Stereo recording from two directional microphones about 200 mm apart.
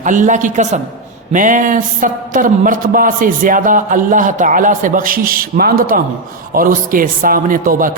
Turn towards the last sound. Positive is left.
turn(degrees=-45)  # may be behind; listen again after turning